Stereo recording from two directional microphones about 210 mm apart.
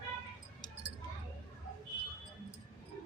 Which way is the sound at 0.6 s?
20° left (ahead or behind).